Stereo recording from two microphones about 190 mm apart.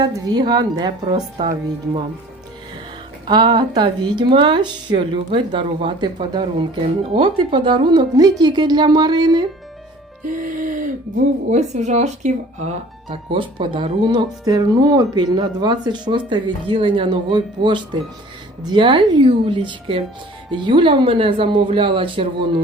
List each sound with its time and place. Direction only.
0.0 s speech: 20° right (ahead or behind)
3.2 s speech: 25° right (ahead or behind)
10.2 s music: 45° right (ahead or behind)
11.4 s speech: 40° right (ahead or behind)